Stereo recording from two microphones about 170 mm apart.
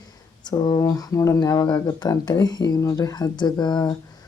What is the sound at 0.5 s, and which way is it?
Speech, 25° left (ahead or behind).